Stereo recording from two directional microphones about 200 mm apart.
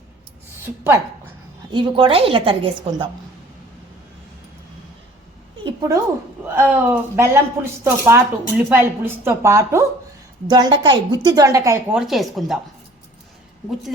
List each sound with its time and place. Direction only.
1.7 s speech: 25° right (ahead or behind)
5.6 s a sound: 20° right (ahead or behind)
6.5 s speech: 10° right (ahead or behind)
11.9 s speech: centre (ahead or behind)